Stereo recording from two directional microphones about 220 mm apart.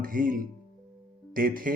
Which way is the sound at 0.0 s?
40° right (ahead or behind).